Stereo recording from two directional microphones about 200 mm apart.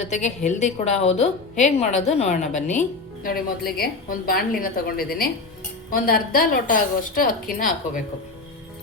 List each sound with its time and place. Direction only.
0.0 s a woman's voice: 35° left (ahead or behind)
3.2 s a woman's voice: 45° left (ahead or behind)